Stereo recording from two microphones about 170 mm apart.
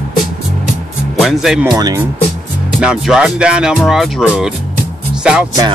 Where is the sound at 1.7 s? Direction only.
25° right (ahead or behind).